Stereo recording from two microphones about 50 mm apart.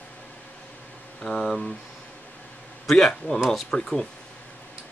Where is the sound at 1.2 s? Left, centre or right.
Centre.